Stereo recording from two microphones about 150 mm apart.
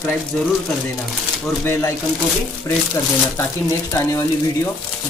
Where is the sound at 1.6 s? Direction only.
15° left (ahead or behind).